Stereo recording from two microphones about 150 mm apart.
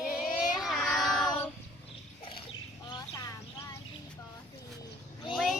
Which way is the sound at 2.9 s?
25° left (ahead or behind).